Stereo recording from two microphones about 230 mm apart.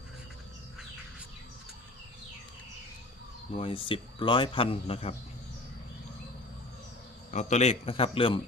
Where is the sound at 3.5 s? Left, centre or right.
Left.